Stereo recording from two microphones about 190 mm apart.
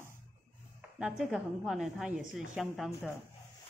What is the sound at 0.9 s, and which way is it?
Speech, 5° right (ahead or behind).